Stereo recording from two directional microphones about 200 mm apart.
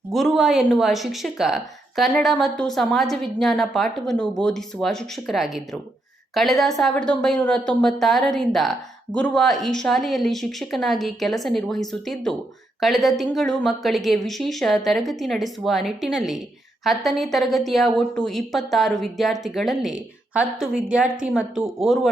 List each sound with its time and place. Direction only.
0.1 s speech: centre (ahead or behind)